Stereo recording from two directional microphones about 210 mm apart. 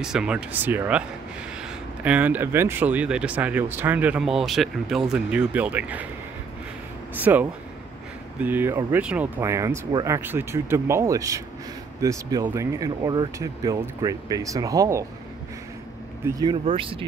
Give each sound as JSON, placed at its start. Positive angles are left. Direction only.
{"t": 0.0, "sound": "speech", "side_deg": -5}
{"t": 2.0, "sound": "speech", "side_deg": -5}
{"t": 7.2, "sound": "speech", "side_deg": -10}
{"t": 16.3, "sound": "speech", "side_deg": -20}